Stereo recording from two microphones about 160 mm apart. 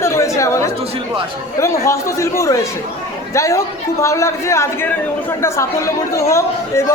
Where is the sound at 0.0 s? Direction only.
15° left (ahead or behind).